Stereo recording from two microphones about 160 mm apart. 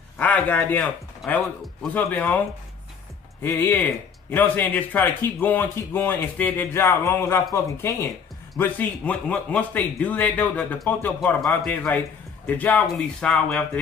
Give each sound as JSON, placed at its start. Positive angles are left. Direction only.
{"t": 0.2, "sound": "speech", "side_deg": 10}
{"t": 3.4, "sound": "speech", "side_deg": 15}